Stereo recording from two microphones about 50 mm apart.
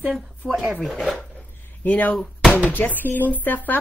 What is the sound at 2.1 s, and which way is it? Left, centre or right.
Speech, centre.